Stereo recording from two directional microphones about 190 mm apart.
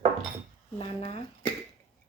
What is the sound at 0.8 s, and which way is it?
Speech, 30° left (ahead or behind).